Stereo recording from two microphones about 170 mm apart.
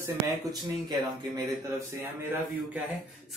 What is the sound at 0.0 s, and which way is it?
Speech, 20° right (ahead or behind).